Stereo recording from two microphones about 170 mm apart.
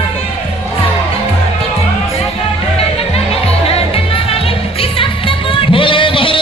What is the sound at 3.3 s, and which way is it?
Music, 35° left (ahead or behind).